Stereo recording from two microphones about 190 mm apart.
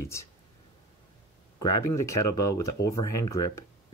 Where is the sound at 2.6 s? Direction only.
15° left (ahead or behind).